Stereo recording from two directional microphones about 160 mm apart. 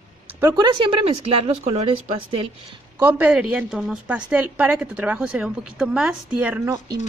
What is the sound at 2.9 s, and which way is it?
A woman's voice, 10° right (ahead or behind).